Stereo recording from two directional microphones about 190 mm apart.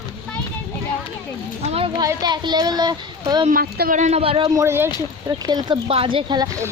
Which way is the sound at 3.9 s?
35° right (ahead or behind).